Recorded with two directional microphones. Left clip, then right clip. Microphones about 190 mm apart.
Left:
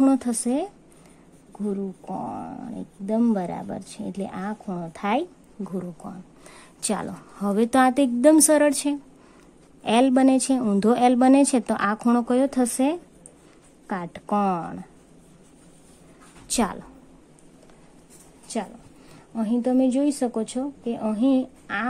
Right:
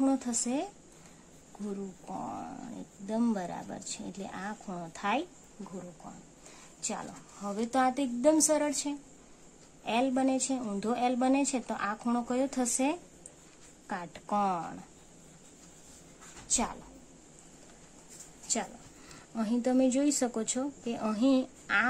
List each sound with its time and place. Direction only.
0.0 s speech: 45° left (ahead or behind)
2.0 s speech: 25° left (ahead or behind)
6.0 s a woman's voice: 50° left (ahead or behind); by 14.8 s 30° left (ahead or behind)
16.4 s a woman's voice: 45° left (ahead or behind)
19.3 s speech: 10° left (ahead or behind)